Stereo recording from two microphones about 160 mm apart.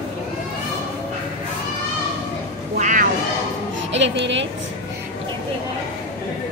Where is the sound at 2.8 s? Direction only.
55° right (ahead or behind).